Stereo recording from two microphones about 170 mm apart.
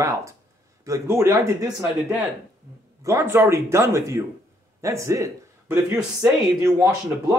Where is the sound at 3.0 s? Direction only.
15° right (ahead or behind).